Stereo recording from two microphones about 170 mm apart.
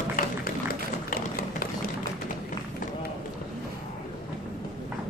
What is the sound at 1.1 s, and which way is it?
Tap, 60° left (ahead or behind).